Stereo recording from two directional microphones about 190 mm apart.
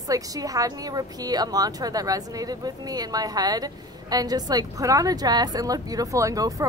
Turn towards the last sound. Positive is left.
turn(degrees=-15)  # may be behind; listen again after turning